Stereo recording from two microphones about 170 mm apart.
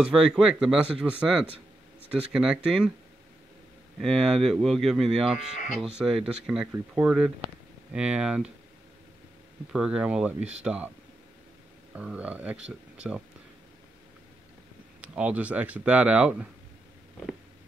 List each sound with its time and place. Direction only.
0.0 s speech: 5° right (ahead or behind)
4.0 s speech: centre (ahead or behind)
9.7 s speech: 5° right (ahead or behind)
11.9 s speech: 5° right (ahead or behind)
15.0 s speech: 5° right (ahead or behind)